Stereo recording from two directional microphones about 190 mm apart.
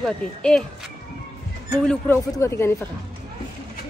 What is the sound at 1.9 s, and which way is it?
Speech, 10° left (ahead or behind).